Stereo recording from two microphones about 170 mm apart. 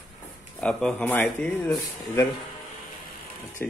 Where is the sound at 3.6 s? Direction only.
10° left (ahead or behind).